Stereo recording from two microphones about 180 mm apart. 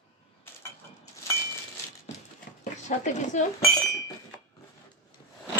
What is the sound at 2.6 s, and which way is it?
Speech, 45° left (ahead or behind).